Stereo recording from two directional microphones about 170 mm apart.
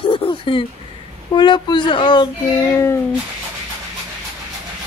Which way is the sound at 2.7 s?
15° left (ahead or behind).